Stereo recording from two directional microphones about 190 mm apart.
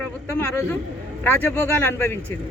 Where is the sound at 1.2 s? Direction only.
10° left (ahead or behind).